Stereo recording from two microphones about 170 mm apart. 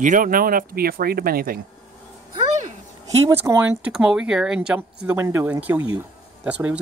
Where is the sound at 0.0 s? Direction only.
50° right (ahead or behind).